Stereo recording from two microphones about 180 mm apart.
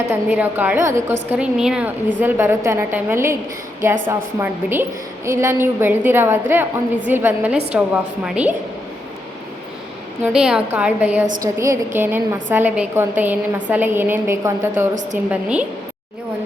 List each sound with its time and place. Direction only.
0.1 s a woman's voice: 10° right (ahead or behind)
10.2 s a woman's voice: 5° right (ahead or behind)